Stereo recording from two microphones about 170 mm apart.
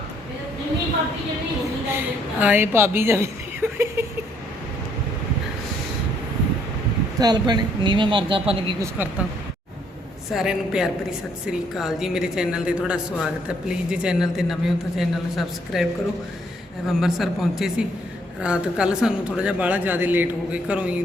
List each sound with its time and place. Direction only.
2.4 s a woman's voice: 10° right (ahead or behind)
7.2 s speech: 25° right (ahead or behind)
8.8 s a man's voice: 10° right (ahead or behind)
10.3 s a woman's voice: 5° right (ahead or behind)